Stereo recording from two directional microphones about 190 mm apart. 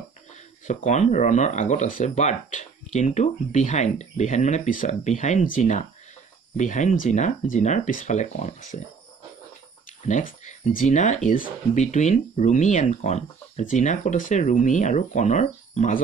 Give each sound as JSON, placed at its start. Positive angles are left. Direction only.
{"t": 0.8, "sound": "speech", "side_deg": 40}
{"t": 10.0, "sound": "speech", "side_deg": 40}